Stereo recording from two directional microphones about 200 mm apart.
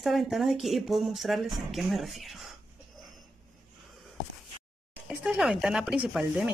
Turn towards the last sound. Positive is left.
turn(degrees=-5)  # may be behind; listen again after turning